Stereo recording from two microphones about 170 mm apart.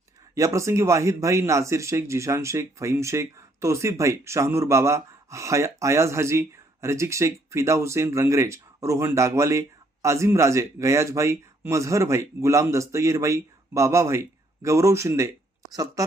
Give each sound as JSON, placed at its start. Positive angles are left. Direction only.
{"t": 0.3, "sound": "speech", "side_deg": -15}